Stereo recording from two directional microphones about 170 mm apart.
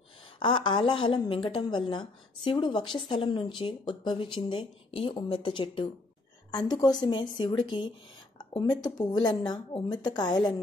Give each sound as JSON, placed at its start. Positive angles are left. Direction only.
{"t": 0.4, "sound": "a woman's voice", "side_deg": 30}